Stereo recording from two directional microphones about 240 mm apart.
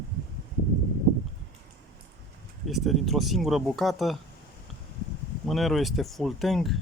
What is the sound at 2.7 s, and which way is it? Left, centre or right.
Speech, centre.